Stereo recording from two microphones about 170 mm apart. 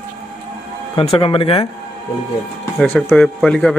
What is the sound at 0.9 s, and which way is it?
Speech, 30° left (ahead or behind).